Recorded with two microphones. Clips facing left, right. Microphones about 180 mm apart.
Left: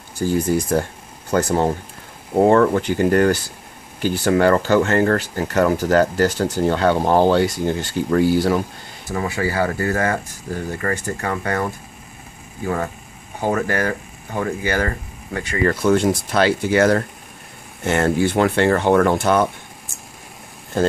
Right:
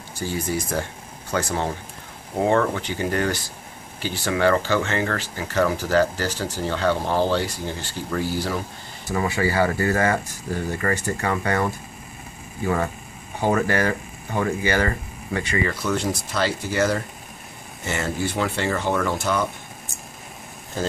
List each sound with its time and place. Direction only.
0.2 s speech: 45° left (ahead or behind)
12.6 s speech: 45° left (ahead or behind)
20.7 s speech: 60° left (ahead or behind)